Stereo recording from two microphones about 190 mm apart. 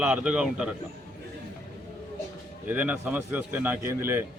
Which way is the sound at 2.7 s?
10° right (ahead or behind).